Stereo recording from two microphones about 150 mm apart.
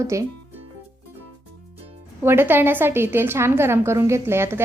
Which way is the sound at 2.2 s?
15° right (ahead or behind).